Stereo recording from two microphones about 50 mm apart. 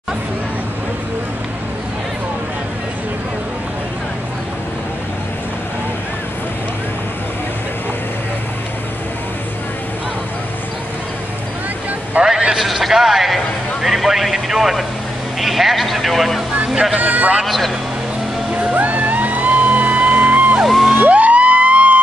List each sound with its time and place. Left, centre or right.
12.3 s a sound: centre
13.8 s vehicle: centre
15.4 s a man's voice: centre
17.0 s a man's voice: right
18.5 s music: right
18.8 s music: right
20.6 s music: centre
20.9 s music: right